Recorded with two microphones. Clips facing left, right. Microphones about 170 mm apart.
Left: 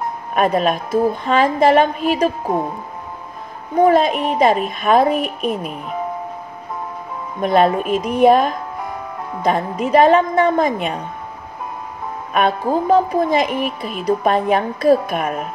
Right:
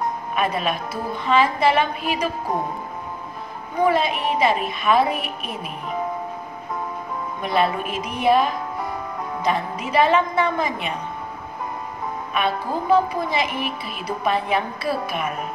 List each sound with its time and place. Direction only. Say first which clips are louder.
0.3 s a woman's voice: left 8 dB; 45° left (ahead or behind)
3.8 s a woman's voice: left 6 dB; 45° left (ahead or behind)
7.4 s a woman's voice: left 7 dB; 45° left (ahead or behind)
12.4 s a woman's voice: left 7 dB; 50° left (ahead or behind)